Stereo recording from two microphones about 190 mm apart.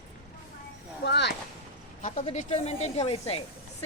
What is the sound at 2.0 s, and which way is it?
Speech, 35° left (ahead or behind).